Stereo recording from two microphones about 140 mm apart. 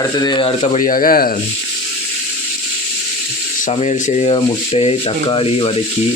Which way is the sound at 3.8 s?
55° left (ahead or behind).